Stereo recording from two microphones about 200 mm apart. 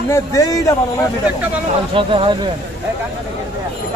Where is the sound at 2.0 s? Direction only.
25° right (ahead or behind).